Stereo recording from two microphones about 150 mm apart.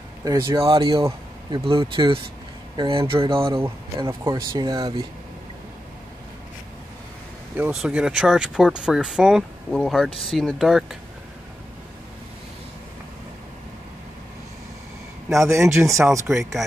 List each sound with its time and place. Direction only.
0.2 s speech: 20° right (ahead or behind)
0.7 s speech: 35° right (ahead or behind)
7.5 s speech: 10° right (ahead or behind)
15.3 s speech: 20° right (ahead or behind)